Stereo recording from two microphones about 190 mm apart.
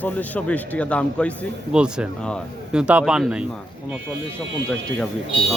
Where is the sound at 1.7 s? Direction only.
5° right (ahead or behind).